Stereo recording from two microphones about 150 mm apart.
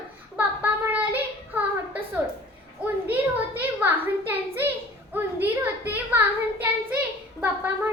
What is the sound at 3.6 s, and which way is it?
A child's voice, 15° right (ahead or behind).